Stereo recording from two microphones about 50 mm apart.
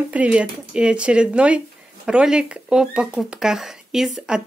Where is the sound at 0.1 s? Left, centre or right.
Right.